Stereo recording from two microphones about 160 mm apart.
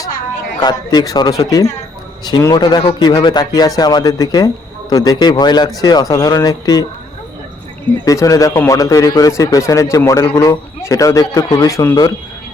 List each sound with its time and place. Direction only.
0.6 s speech: 25° left (ahead or behind)
8.0 s speech: 20° left (ahead or behind)